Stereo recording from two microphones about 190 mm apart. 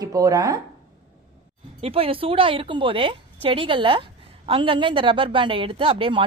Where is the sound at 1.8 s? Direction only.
30° right (ahead or behind).